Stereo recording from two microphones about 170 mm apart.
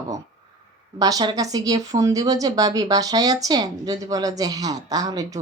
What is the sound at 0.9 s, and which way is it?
Speech, 20° right (ahead or behind).